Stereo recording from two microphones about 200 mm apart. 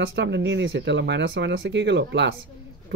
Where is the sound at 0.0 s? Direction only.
60° right (ahead or behind).